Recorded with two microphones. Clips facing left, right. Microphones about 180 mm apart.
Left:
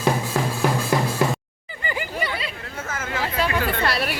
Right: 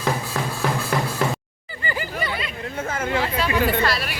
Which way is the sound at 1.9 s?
15° left (ahead or behind).